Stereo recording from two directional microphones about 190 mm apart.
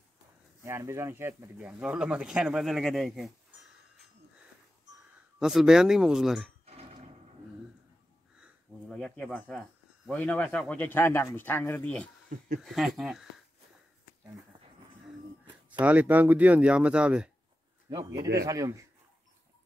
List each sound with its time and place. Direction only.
0.7 s speech: 15° right (ahead or behind)
5.4 s speech: centre (ahead or behind)
6.6 s a sound: 30° right (ahead or behind)
8.4 s a sound: 5° right (ahead or behind)
10.1 s speech: 10° left (ahead or behind)
15.8 s speech: 10° right (ahead or behind)
17.8 s a man's voice: 20° right (ahead or behind)